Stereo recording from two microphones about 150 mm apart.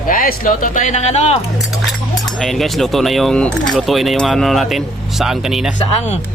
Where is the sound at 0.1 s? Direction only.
65° left (ahead or behind); by 1.4 s 45° left (ahead or behind).